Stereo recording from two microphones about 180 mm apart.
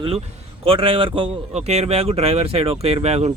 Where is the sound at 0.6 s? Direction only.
30° right (ahead or behind).